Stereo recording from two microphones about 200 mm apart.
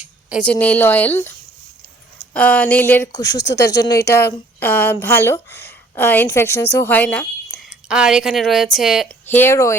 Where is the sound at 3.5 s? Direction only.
60° left (ahead or behind).